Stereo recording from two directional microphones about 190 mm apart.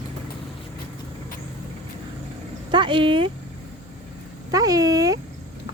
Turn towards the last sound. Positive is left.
turn(degrees=-20)  # may be behind; listen again after turning